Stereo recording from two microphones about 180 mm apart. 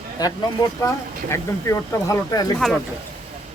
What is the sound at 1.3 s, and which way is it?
Speech, 15° left (ahead or behind).